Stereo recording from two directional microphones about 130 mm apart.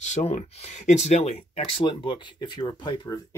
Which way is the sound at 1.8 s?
40° left (ahead or behind).